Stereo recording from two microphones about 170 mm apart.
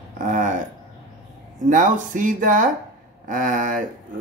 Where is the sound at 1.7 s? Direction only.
50° right (ahead or behind).